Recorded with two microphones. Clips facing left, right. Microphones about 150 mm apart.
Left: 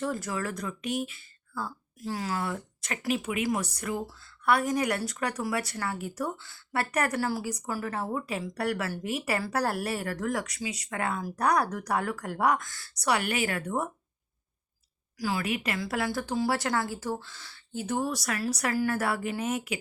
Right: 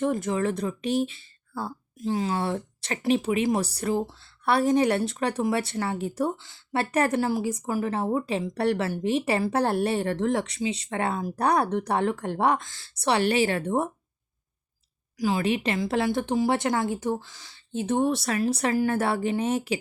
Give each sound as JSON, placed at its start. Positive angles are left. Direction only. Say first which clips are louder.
{"t": 0.0, "sound": "speech", "louder": "right 7 dB", "side_deg": -20}
{"t": 15.2, "sound": "speech", "louder": "right 6 dB", "side_deg": -25}